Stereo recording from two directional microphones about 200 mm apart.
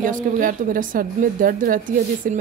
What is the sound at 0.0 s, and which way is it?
A woman's voice, 40° right (ahead or behind).